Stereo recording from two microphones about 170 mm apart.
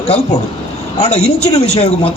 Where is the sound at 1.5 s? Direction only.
40° left (ahead or behind).